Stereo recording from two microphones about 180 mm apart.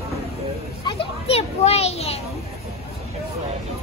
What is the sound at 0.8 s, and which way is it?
Children playing, 30° left (ahead or behind).